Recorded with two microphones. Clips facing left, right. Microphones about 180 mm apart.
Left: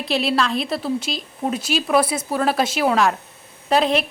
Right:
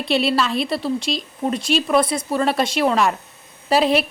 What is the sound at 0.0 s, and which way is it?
A woman's voice, centre (ahead or behind).